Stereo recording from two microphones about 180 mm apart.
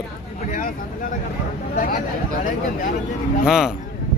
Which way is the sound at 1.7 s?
45° left (ahead or behind).